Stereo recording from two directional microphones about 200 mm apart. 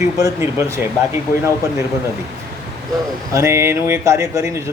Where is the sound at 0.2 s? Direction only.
15° right (ahead or behind).